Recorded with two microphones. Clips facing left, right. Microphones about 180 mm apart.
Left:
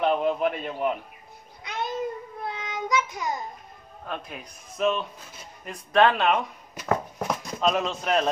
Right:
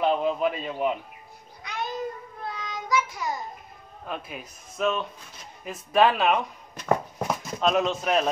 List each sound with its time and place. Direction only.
0.0 s a man's voice: centre (ahead or behind)
1.6 s child singing: 20° left (ahead or behind)
4.1 s speech: 5° right (ahead or behind)